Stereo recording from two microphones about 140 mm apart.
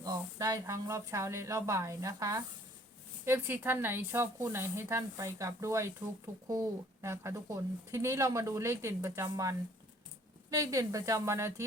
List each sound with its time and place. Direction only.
0.0 s speech: 25° right (ahead or behind)